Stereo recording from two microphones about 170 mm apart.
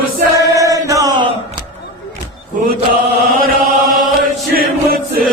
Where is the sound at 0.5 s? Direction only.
20° right (ahead or behind).